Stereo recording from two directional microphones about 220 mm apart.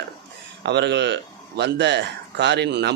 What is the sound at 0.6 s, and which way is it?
Speech, 50° right (ahead or behind).